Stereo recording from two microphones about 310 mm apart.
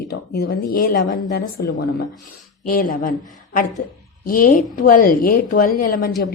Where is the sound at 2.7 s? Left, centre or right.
Left.